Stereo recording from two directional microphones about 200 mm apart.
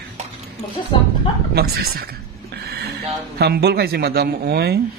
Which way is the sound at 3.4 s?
55° right (ahead or behind).